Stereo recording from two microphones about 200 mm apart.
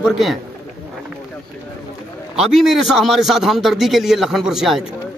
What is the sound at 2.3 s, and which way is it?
A man's voice, centre (ahead or behind).